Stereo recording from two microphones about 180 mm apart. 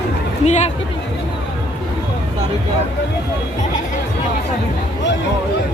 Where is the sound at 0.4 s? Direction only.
40° left (ahead or behind).